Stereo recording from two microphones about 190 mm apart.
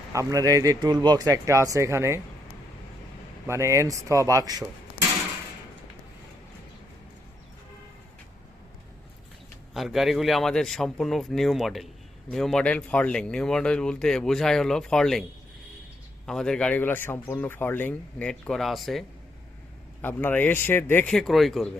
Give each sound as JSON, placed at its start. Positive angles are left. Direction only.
{"t": 0.1, "sound": "speech", "side_deg": -15}
{"t": 3.4, "sound": "speech", "side_deg": -15}
{"t": 9.7, "sound": "speech", "side_deg": 0}
{"t": 16.2, "sound": "speech", "side_deg": 5}